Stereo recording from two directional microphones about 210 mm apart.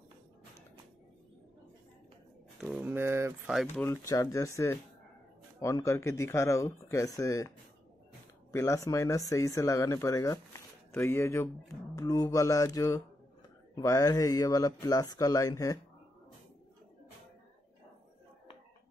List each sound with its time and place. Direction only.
2.6 s speech: 5° right (ahead or behind)
3.8 s speech: 15° left (ahead or behind)
5.6 s speech: 15° left (ahead or behind)